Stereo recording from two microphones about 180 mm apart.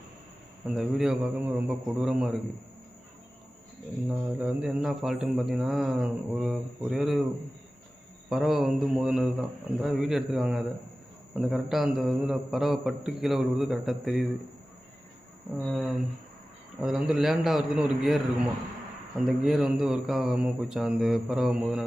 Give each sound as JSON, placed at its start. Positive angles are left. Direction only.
{"t": 0.7, "sound": "speech", "side_deg": 0}
{"t": 4.1, "sound": "speech", "side_deg": -5}
{"t": 8.3, "sound": "speech", "side_deg": 0}
{"t": 15.5, "sound": "speech", "side_deg": -5}
{"t": 19.2, "sound": "speech", "side_deg": -5}